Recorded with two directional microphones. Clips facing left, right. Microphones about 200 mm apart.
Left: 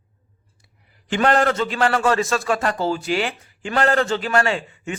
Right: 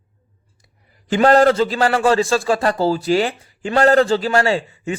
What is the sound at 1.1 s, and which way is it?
A man's voice, 35° right (ahead or behind).